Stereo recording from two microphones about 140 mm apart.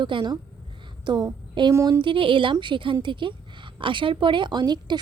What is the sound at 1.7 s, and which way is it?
Speech, 20° right (ahead or behind).